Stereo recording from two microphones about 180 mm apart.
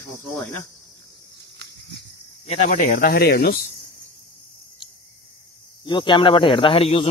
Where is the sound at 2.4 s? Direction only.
40° left (ahead or behind); by 3.5 s 60° left (ahead or behind).